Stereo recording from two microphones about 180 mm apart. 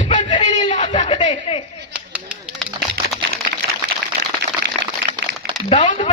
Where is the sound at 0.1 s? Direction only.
30° left (ahead or behind).